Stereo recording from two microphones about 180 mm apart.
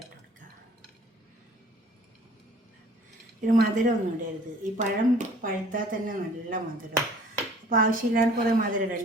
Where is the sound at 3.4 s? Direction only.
45° right (ahead or behind).